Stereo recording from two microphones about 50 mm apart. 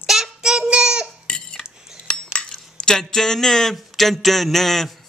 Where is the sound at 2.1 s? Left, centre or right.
Centre.